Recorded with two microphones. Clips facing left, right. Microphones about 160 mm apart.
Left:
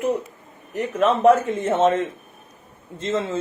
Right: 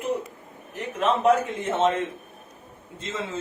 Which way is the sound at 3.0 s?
50° left (ahead or behind).